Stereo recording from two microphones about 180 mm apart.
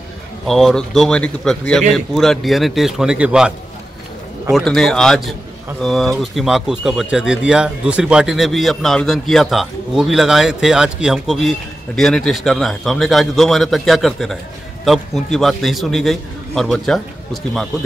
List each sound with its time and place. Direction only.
0.5 s speech: centre (ahead or behind)